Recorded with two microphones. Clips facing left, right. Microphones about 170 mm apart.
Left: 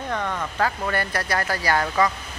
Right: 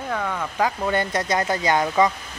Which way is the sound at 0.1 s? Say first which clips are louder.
Right 1 dB; 5° right (ahead or behind).